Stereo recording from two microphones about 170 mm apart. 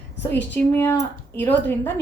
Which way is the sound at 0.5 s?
10° left (ahead or behind).